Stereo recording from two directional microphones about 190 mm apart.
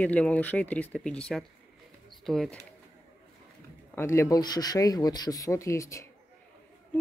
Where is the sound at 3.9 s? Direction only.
15° left (ahead or behind).